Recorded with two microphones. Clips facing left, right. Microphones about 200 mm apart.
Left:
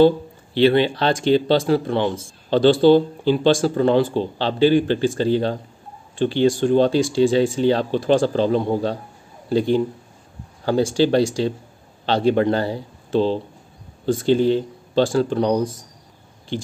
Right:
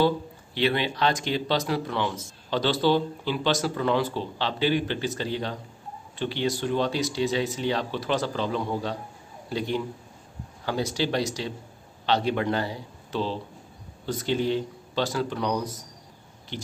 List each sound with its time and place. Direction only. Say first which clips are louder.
0.6 s speech: left 9 dB; 30° left (ahead or behind)